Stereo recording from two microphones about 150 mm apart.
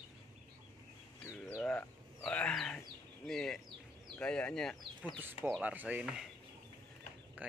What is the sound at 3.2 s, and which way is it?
Speech, 5° left (ahead or behind).